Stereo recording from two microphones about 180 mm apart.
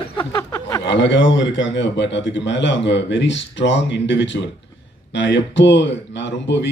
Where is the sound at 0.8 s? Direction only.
80° left.